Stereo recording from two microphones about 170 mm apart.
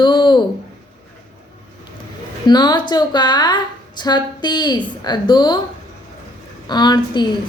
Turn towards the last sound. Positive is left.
turn(degrees=25)  # may be behind; listen again after turning